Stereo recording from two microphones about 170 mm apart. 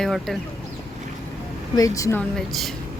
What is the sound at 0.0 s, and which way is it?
Speech, centre (ahead or behind).